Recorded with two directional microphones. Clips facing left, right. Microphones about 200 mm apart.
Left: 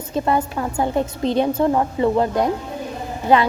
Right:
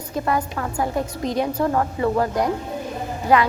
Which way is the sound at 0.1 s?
25° left (ahead or behind).